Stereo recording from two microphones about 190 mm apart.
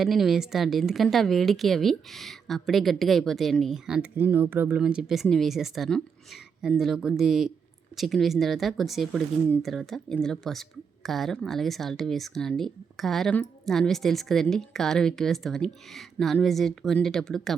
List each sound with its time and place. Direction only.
0.0 s speech: centre (ahead or behind)